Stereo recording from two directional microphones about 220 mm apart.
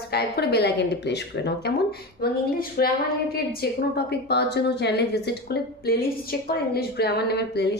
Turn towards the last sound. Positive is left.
turn(degrees=50)  # may be behind; listen again after turning